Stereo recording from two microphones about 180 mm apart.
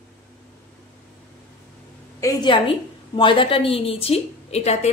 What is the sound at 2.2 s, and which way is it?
A woman's voice, 25° left (ahead or behind).